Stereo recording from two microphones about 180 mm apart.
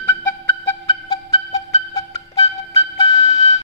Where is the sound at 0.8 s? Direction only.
25° left (ahead or behind).